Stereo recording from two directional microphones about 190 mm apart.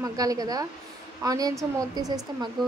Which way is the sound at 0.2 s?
20° right (ahead or behind).